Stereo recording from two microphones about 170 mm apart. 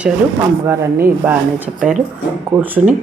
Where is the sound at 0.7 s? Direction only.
15° right (ahead or behind).